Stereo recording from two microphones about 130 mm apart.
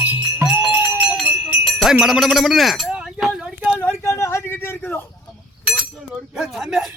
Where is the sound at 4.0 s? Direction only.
20° left (ahead or behind).